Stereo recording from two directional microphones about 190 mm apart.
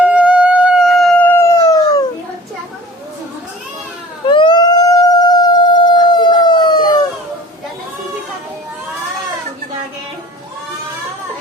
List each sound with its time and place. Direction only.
0.0 s howl: 5° right (ahead or behind); by 1.6 s 15° left (ahead or behind)
1.7 s dog: 20° left (ahead or behind)
4.3 s howl: 25° left (ahead or behind)